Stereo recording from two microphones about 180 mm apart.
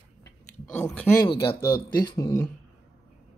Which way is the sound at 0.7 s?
10° left (ahead or behind).